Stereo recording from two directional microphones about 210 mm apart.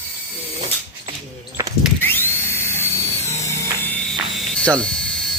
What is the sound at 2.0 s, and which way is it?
Mechanisms, 10° left (ahead or behind).